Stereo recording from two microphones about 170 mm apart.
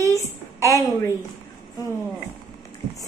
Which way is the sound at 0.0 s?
15° left (ahead or behind).